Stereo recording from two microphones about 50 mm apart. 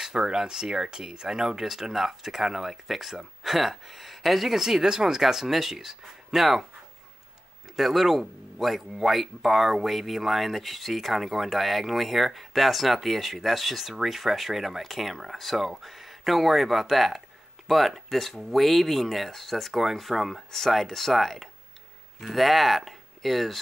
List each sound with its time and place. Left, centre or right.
0.0 s speech: centre
7.7 s speech: centre